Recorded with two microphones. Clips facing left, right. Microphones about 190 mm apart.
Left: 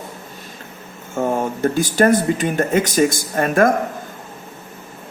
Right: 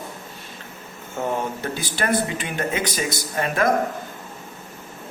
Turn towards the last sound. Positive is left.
turn(degrees=50)  # may be behind; listen again after turning